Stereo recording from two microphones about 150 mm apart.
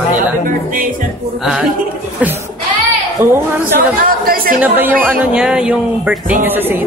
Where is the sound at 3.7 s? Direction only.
70° right (ahead or behind).